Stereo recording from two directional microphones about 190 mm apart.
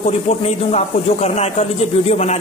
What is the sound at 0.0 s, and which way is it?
A man's voice, 35° left (ahead or behind).